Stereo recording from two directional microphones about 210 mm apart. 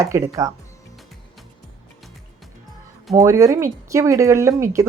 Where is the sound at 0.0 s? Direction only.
15° right (ahead or behind).